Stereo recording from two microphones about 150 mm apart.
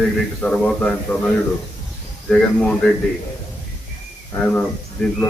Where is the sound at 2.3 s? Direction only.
5° left (ahead or behind).